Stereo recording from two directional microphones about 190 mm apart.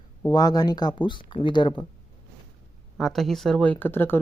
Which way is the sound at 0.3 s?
20° left (ahead or behind).